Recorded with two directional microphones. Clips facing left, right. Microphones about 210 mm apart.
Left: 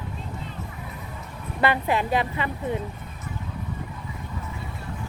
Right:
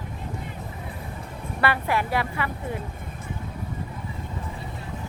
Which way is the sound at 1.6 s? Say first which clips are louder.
Left 2 dB; 20° left (ahead or behind).